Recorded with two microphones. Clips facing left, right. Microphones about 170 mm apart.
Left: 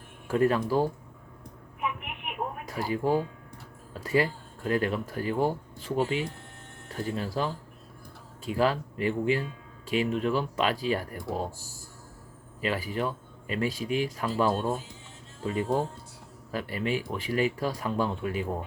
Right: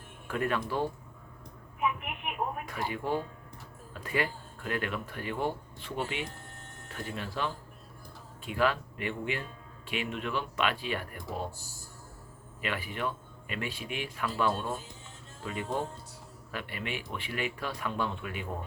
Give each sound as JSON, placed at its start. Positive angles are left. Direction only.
{"t": 0.3, "sound": "speech", "side_deg": 35}
{"t": 2.6, "sound": "speech", "side_deg": 35}
{"t": 12.6, "sound": "speech", "side_deg": 35}